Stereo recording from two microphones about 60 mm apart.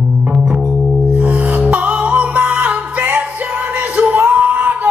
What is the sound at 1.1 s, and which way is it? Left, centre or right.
Music, right.